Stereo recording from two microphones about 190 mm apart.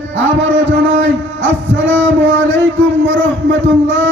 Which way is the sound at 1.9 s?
10° left (ahead or behind).